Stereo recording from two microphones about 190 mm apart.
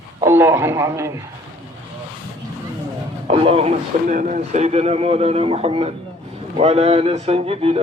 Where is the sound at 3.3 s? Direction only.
30° right (ahead or behind).